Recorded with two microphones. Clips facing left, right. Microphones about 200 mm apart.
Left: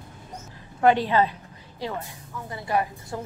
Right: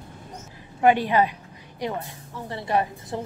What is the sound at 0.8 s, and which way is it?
Speech, 15° right (ahead or behind).